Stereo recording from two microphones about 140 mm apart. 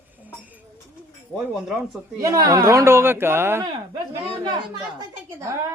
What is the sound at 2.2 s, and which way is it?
Speech, 25° right (ahead or behind).